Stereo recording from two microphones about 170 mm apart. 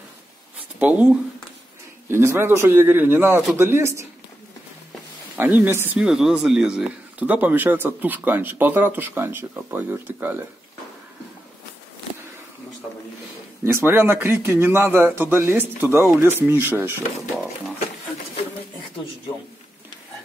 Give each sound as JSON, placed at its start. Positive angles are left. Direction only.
{"t": 0.7, "sound": "speech", "side_deg": -10}
{"t": 2.0, "sound": "speech", "side_deg": -15}
{"t": 5.3, "sound": "speech", "side_deg": -10}
{"t": 13.7, "sound": "speech", "side_deg": -15}